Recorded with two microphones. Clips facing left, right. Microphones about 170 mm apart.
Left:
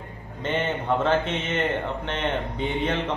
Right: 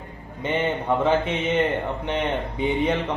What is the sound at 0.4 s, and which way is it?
A man's voice, 15° right (ahead or behind).